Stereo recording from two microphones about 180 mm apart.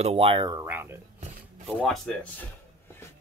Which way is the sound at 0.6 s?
10° right (ahead or behind).